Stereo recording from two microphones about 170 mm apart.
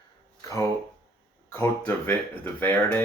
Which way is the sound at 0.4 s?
20° left (ahead or behind).